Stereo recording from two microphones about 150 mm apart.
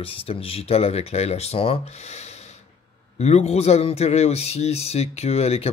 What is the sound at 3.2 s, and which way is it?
Speech, 45° left (ahead or behind).